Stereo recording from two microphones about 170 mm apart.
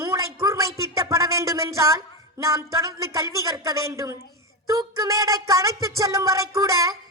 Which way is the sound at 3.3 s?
20° right (ahead or behind).